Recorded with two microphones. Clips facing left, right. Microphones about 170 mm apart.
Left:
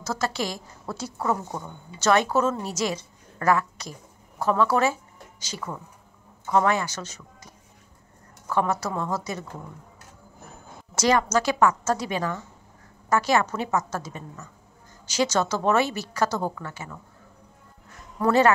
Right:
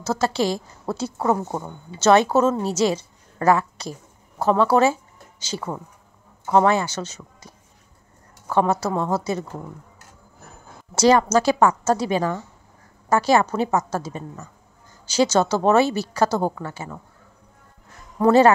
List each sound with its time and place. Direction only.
0.0 s a woman's voice: 25° right (ahead or behind)
11.0 s a woman's voice: 30° right (ahead or behind)
18.2 s a woman's voice: 30° right (ahead or behind)